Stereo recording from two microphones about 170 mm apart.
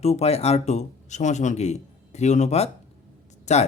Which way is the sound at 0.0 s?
40° left (ahead or behind).